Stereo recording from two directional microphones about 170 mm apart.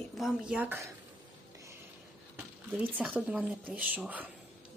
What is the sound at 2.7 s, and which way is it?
Speech, 10° right (ahead or behind).